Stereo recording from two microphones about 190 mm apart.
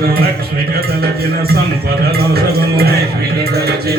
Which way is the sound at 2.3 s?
55° right (ahead or behind).